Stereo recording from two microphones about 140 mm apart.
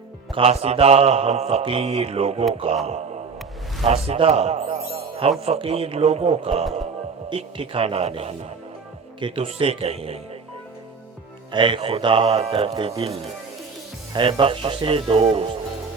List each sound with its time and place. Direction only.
0.3 s mantra: 45° right (ahead or behind)
2.6 s speech: 40° right (ahead or behind)
3.8 s speech: 50° right (ahead or behind)
5.4 s mantra: 45° right (ahead or behind)
11.5 s speech: 40° right (ahead or behind)
13.0 s mantra: 45° right (ahead or behind)
14.1 s speech: 35° right (ahead or behind)